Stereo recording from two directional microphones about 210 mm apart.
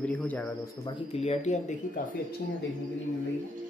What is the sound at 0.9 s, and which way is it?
Speech, 25° left (ahead or behind).